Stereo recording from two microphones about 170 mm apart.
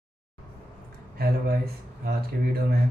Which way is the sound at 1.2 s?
65° right (ahead or behind).